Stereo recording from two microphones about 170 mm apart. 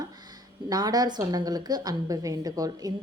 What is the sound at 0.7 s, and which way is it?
A woman's voice, 20° right (ahead or behind).